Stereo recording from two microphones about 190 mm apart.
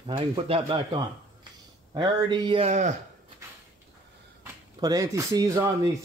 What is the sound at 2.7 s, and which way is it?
Speech, 40° right (ahead or behind).